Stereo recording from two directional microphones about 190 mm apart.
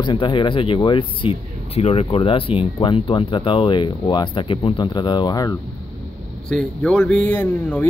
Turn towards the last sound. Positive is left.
turn(degrees=10)  # may be behind; listen again after turning